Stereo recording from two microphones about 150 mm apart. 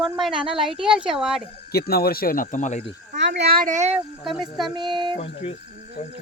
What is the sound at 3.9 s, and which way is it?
Speech, centre (ahead or behind).